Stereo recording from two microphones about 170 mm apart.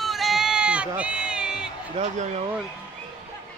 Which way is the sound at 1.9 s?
40° right (ahead or behind).